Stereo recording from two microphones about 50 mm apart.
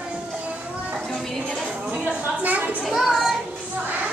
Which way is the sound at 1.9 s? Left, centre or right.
Right.